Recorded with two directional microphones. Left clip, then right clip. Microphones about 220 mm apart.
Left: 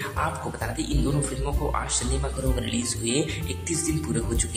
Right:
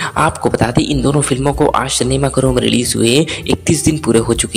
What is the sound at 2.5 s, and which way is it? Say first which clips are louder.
Speech: right 16 dB; 40° right (ahead or behind).